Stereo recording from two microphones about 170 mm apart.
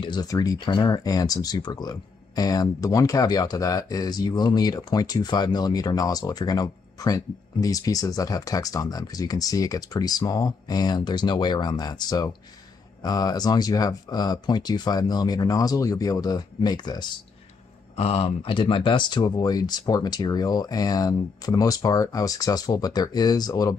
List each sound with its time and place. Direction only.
0.0 s speech: 25° left (ahead or behind)
17.9 s speech: 35° left (ahead or behind)